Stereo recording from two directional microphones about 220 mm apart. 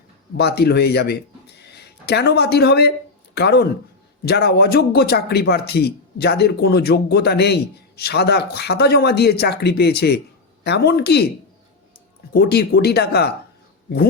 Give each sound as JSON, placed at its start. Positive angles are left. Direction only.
{"t": 0.3, "sound": "speech", "side_deg": 45}
{"t": 12.3, "sound": "speech", "side_deg": 45}